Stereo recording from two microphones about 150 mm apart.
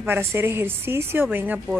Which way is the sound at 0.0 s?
15° right (ahead or behind).